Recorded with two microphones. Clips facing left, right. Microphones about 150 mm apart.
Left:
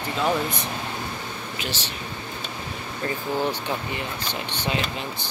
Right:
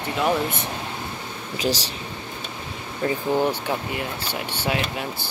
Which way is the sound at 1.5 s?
35° right (ahead or behind).